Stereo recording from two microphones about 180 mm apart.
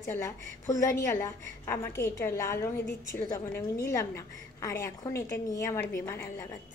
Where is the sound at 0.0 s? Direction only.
15° left (ahead or behind).